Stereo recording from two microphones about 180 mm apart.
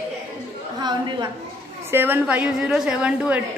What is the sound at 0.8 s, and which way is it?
Speech, 25° right (ahead or behind).